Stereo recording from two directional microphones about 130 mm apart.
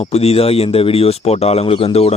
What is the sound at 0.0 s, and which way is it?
Speech, 50° left (ahead or behind).